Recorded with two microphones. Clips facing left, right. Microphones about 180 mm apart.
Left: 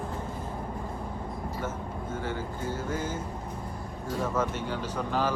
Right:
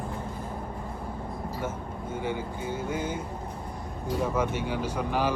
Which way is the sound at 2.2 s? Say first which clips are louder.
Right 3 dB; 15° right (ahead or behind).